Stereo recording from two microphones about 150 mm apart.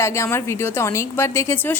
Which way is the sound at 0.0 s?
15° left (ahead or behind).